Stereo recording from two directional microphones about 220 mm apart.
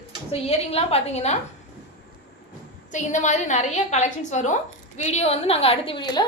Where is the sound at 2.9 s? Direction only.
35° left (ahead or behind).